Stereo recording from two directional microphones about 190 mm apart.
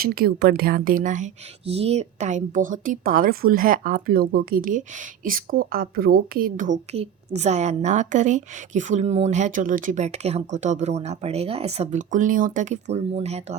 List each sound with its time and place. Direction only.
0.0 s a woman's voice: 55° right (ahead or behind); by 13.6 s 35° right (ahead or behind)